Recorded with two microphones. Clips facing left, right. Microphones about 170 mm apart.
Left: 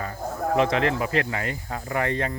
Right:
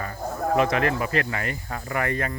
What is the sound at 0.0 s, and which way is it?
Speech, 20° left (ahead or behind).